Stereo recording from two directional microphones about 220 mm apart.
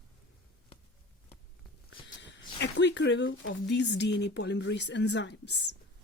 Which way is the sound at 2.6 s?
55° left (ahead or behind).